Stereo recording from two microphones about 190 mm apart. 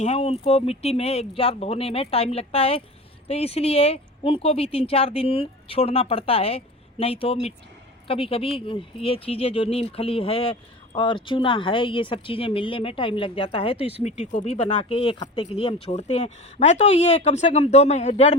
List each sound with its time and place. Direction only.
0.0 s a woman's voice: 35° left (ahead or behind)